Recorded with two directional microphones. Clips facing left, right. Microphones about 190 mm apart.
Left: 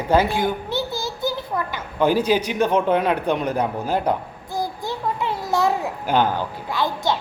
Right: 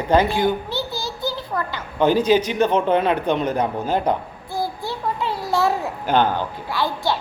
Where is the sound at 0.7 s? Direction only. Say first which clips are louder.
Left 1 dB; 20° left (ahead or behind).